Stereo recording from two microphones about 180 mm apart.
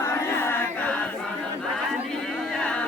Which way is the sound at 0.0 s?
15° left (ahead or behind).